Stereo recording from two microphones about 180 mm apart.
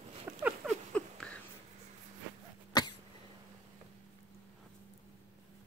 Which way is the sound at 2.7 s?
20° left (ahead or behind).